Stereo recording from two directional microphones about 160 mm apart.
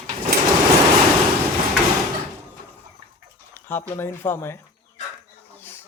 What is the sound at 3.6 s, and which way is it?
Speech, 15° left (ahead or behind).